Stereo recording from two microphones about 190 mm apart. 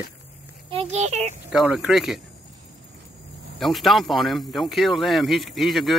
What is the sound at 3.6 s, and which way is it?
Speech, centre (ahead or behind).